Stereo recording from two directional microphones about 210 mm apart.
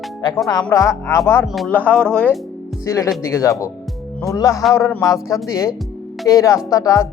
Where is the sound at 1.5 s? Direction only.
5° left (ahead or behind).